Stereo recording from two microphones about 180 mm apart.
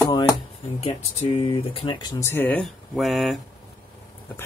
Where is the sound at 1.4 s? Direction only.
30° left (ahead or behind); by 3.3 s centre (ahead or behind).